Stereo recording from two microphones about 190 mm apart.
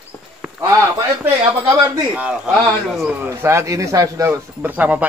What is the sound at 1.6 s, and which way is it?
A man's voice, 5° right (ahead or behind).